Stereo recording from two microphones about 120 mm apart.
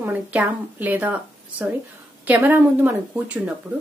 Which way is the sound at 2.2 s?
15° right (ahead or behind).